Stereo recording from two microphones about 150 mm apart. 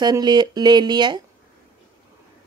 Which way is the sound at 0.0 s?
30° right (ahead or behind).